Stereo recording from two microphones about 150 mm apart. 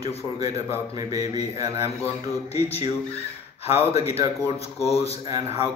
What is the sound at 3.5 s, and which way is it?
A man's voice, 45° left (ahead or behind).